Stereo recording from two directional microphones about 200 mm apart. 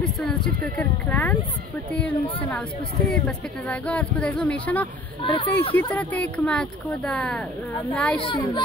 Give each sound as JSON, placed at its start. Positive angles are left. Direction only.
{"t": 0.0, "sound": "speech", "side_deg": 5}
{"t": 5.2, "sound": "speech", "side_deg": 25}
{"t": 5.9, "sound": "speech", "side_deg": 5}
{"t": 8.2, "sound": "speech", "side_deg": 25}